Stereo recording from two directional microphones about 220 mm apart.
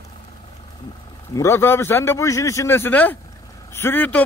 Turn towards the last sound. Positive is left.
turn(degrees=10)  # may be behind; listen again after turning